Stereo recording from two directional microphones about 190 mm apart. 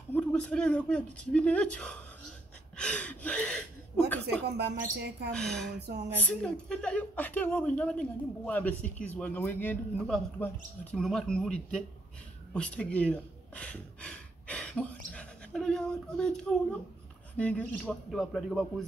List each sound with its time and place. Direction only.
0.1 s a woman's voice: 5° left (ahead or behind)
2.8 s gasp: 5° left (ahead or behind)
4.6 s speech: 60° right (ahead or behind)
5.3 s speech: centre (ahead or behind)
5.7 s speech: 60° right (ahead or behind)
6.2 s a woman's voice: 5° left (ahead or behind)
12.5 s a sound: 5° left (ahead or behind)
15.1 s speech: 5° left (ahead or behind)